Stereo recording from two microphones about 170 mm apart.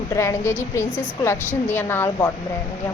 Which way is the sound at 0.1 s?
15° left (ahead or behind).